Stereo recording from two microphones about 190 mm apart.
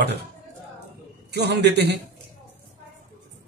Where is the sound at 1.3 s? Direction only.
60° right (ahead or behind).